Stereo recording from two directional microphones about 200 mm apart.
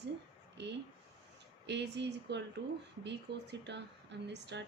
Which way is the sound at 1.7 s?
60° right (ahead or behind).